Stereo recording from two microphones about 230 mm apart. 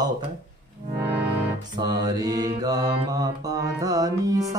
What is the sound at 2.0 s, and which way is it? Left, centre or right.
Mantra, centre.